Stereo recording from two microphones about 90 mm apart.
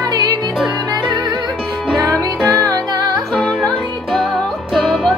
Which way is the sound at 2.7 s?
50° right (ahead or behind).